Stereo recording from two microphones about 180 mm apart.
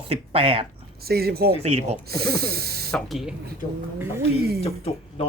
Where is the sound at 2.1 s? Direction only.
60° right (ahead or behind).